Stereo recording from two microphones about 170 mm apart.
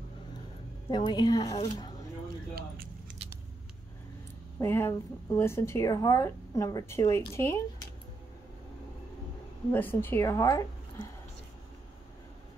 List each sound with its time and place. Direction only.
0.8 s a woman's voice: 25° left (ahead or behind)
4.6 s a woman's voice: 15° left (ahead or behind)
9.7 s a woman's voice: 10° left (ahead or behind)